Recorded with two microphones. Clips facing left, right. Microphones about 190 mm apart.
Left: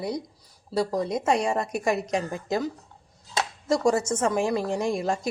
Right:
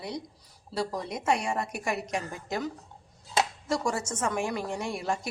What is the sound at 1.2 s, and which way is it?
Speech, 35° left (ahead or behind).